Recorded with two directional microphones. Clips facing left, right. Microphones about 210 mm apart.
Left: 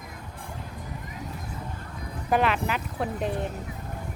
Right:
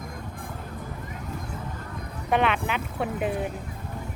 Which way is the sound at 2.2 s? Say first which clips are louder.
Even; centre (ahead or behind).